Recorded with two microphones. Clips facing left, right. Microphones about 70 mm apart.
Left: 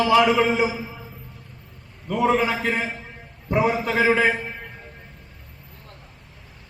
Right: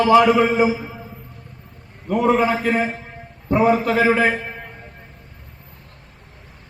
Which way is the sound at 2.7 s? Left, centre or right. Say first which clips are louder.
Right 6 dB; right.